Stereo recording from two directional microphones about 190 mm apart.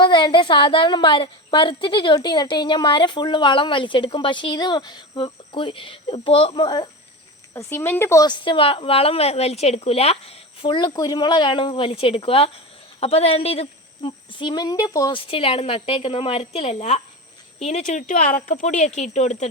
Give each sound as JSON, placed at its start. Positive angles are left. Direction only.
{"t": 0.0, "sound": "a woman's voice", "side_deg": 25}